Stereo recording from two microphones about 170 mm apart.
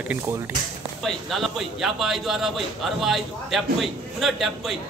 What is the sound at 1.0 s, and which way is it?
A man's voice, centre (ahead or behind).